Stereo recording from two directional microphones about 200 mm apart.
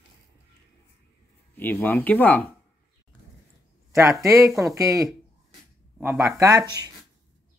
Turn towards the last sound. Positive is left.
turn(degrees=-20)  # may be behind; listen again after turning